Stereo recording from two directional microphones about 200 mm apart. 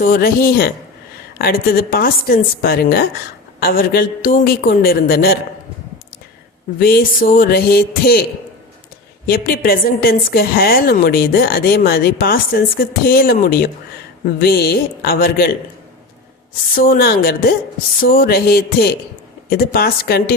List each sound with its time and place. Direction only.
0.0 s a woman's voice: 50° left (ahead or behind)
6.7 s a woman's voice: 50° left (ahead or behind)
9.2 s a woman's voice: 50° left (ahead or behind)
16.7 s a woman's voice: 50° left (ahead or behind)